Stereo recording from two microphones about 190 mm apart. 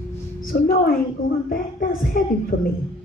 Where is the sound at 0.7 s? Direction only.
50° left (ahead or behind).